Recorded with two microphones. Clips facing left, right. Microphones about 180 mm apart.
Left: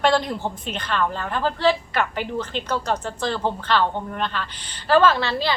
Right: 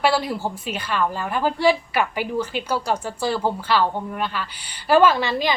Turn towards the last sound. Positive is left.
turn(degrees=-15)  # may be behind; listen again after turning